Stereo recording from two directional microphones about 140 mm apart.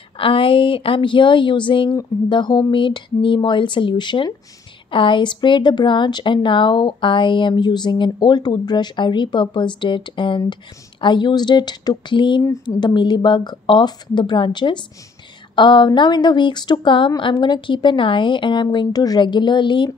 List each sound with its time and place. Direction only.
0.2 s a woman's voice: 40° left (ahead or behind)